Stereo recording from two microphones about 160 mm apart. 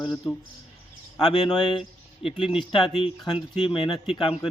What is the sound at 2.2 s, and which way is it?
Speech, 35° left (ahead or behind).